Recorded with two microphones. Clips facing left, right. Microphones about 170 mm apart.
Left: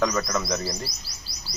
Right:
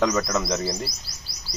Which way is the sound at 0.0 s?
25° right (ahead or behind).